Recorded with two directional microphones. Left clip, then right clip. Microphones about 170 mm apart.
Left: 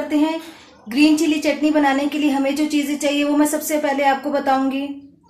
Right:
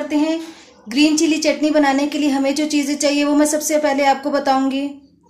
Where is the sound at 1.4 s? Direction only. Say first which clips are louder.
Right 2 dB; 35° right (ahead or behind).